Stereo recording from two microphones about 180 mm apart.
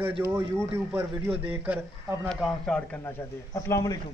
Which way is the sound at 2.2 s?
5° left (ahead or behind).